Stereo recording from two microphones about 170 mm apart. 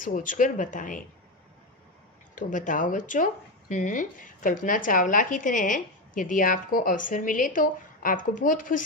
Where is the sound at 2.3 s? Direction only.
50° left (ahead or behind).